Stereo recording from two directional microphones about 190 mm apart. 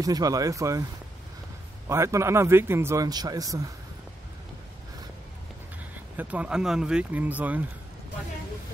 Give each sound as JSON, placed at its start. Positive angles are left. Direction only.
{"t": 0.0, "sound": "speech", "side_deg": -20}
{"t": 1.9, "sound": "speech", "side_deg": -15}
{"t": 6.1, "sound": "speech", "side_deg": -5}